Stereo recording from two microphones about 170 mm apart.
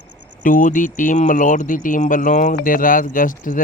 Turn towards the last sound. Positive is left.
turn(degrees=50)  # may be behind; listen again after turning